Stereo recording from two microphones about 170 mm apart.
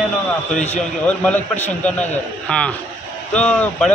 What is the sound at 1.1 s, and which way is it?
A man's voice, 5° left (ahead or behind).